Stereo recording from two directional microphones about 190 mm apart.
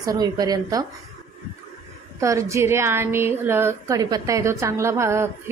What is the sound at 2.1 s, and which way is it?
A woman's voice, 15° right (ahead or behind).